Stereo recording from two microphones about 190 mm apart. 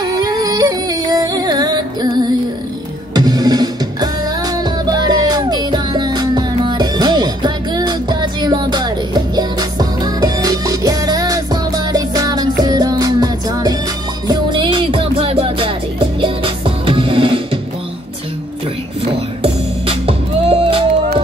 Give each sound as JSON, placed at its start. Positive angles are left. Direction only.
{"t": 0.0, "sound": "yodeling", "side_deg": -20}
{"t": 3.2, "sound": "music", "side_deg": -20}
{"t": 19.4, "sound": "music", "side_deg": -30}